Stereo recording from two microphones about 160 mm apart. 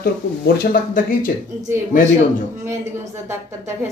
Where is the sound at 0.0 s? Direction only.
65° left (ahead or behind).